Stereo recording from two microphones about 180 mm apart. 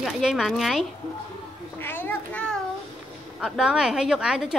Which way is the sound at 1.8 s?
10° left (ahead or behind).